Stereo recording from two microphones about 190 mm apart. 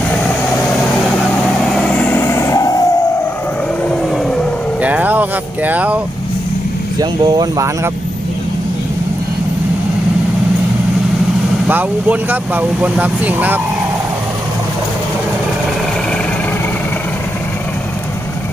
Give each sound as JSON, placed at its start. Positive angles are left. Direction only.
{"t": 1.7, "sound": "vehicle", "side_deg": 5}
{"t": 3.8, "sound": "vehicle", "side_deg": 5}
{"t": 4.8, "sound": "a sound", "side_deg": -10}
{"t": 7.0, "sound": "speech", "side_deg": -20}
{"t": 11.7, "sound": "speech", "side_deg": -10}